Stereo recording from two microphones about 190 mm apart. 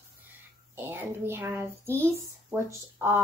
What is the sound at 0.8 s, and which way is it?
A woman's voice, 10° right (ahead or behind).